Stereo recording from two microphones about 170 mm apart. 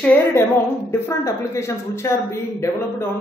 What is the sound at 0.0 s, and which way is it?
A woman's voice, 10° left (ahead or behind).